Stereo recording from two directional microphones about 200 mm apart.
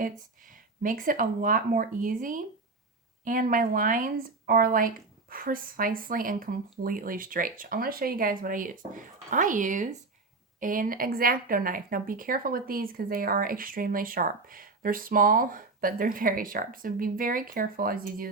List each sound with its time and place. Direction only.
0.0 s a woman's voice: 45° right (ahead or behind)